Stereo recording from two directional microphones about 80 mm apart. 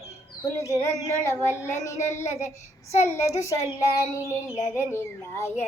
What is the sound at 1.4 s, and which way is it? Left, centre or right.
Child singing, left.